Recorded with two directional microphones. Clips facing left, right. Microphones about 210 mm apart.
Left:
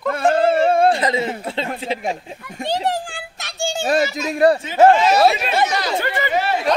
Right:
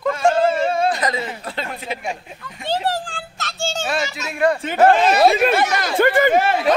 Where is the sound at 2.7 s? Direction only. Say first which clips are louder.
Even; 15° left (ahead or behind).